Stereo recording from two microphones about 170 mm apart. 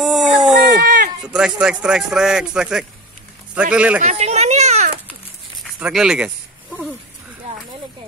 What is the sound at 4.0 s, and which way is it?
Children playing, 40° right (ahead or behind).